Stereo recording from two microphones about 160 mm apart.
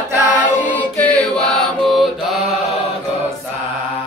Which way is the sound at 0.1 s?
10° right (ahead or behind).